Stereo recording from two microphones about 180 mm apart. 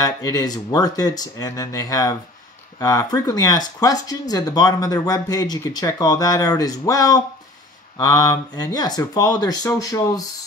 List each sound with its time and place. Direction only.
0.0 s speech: 20° left (ahead or behind)